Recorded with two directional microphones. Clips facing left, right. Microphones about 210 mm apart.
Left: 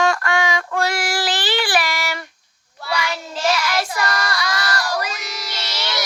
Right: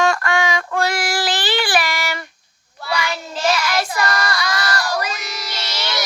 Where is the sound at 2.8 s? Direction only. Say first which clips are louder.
Right 1 dB; 50° right (ahead or behind).